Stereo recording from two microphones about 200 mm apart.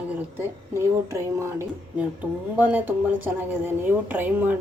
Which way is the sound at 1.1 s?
15° right (ahead or behind).